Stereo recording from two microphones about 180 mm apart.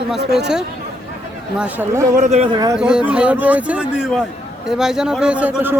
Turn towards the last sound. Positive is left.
turn(degrees=-10)  # may be behind; listen again after turning